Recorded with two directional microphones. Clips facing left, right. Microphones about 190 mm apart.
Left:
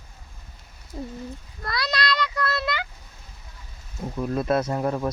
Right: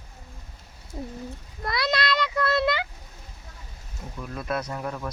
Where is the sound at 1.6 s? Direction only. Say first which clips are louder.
Right 2 dB; 20° right (ahead or behind).